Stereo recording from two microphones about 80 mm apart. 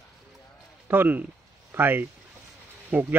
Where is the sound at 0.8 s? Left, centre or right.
Right.